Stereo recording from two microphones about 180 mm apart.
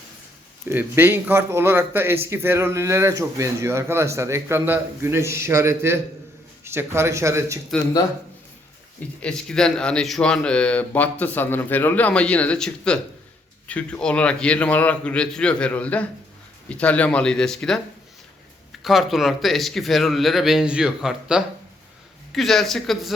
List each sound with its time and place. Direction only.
0.7 s speech: 10° right (ahead or behind)
9.2 s speech: 5° left (ahead or behind)
18.8 s speech: centre (ahead or behind)